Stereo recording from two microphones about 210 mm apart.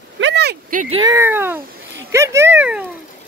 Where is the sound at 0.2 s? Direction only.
55° right (ahead or behind).